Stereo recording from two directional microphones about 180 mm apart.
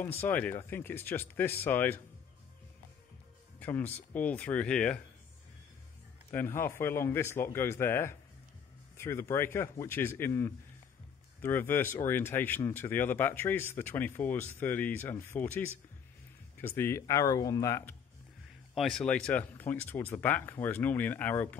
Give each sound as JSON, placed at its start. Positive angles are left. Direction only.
{"t": 0.0, "sound": "speech", "side_deg": 10}
{"t": 3.5, "sound": "speech", "side_deg": 10}
{"t": 6.3, "sound": "speech", "side_deg": 15}
{"t": 16.6, "sound": "speech", "side_deg": 10}
{"t": 18.8, "sound": "speech", "side_deg": 0}